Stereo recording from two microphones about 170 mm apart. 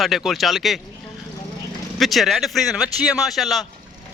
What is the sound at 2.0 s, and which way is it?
Speech, centre (ahead or behind).